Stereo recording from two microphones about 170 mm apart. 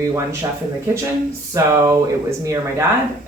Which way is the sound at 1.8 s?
20° right (ahead or behind).